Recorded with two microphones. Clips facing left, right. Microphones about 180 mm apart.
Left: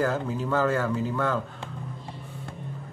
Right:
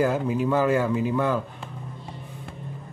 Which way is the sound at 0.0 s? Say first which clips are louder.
Right 4 dB; 15° right (ahead or behind).